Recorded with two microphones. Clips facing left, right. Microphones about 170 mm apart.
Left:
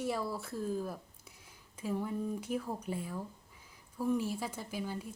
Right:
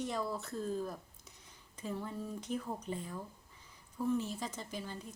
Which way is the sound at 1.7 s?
10° left (ahead or behind).